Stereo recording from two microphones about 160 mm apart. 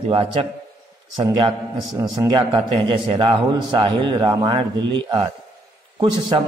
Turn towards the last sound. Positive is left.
turn(degrees=-30)  # may be behind; listen again after turning